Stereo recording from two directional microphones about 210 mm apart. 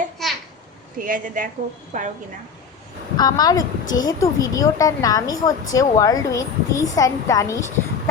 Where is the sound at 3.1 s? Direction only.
20° left (ahead or behind).